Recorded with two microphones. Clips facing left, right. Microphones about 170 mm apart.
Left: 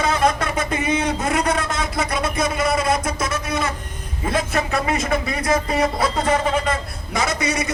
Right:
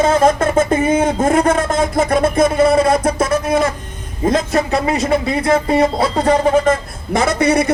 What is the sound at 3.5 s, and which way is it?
Speech, 45° right (ahead or behind).